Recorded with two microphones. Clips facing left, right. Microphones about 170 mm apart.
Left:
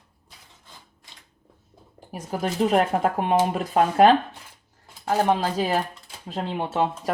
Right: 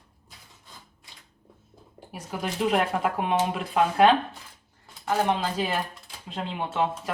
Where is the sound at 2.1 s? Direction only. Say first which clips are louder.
Left 5 dB; 40° left (ahead or behind).